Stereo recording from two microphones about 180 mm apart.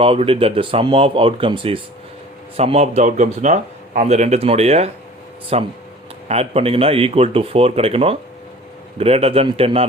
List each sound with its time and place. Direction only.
0.0 s speech: 30° right (ahead or behind)